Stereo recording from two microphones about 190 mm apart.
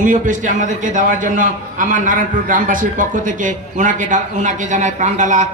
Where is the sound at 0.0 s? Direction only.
45° right (ahead or behind).